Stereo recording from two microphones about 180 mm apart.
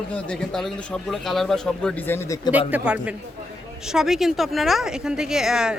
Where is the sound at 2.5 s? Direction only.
10° right (ahead or behind).